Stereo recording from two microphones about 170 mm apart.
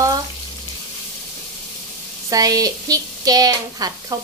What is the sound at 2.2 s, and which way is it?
Speech, 20° right (ahead or behind).